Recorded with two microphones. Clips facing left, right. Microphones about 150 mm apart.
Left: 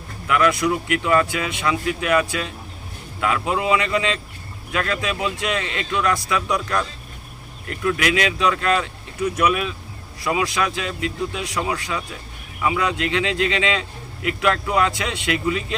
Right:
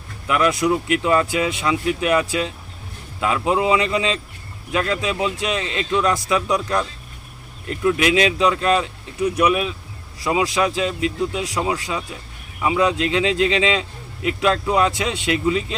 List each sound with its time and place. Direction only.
0.3 s a man's voice: 25° right (ahead or behind)